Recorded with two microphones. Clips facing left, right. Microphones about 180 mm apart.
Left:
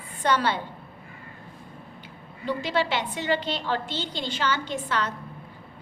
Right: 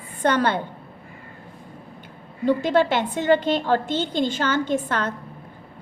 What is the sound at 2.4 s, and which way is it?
A woman's voice, 50° right (ahead or behind).